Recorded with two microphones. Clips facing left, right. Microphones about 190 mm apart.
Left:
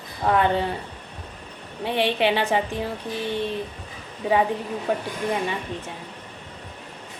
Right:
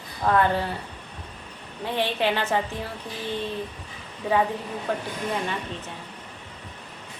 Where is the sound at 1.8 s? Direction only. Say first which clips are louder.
Left 3 dB; 15° left (ahead or behind).